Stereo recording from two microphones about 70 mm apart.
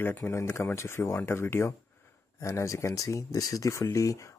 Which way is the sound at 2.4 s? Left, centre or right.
Left.